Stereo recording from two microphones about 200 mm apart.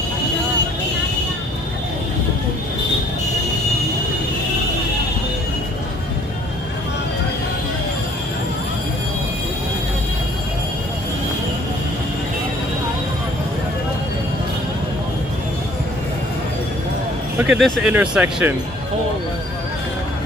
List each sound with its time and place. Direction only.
17.4 s speech: 5° right (ahead or behind)